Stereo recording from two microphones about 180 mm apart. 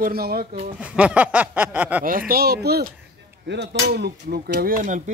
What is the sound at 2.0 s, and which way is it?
A man's voice, 50° right (ahead or behind).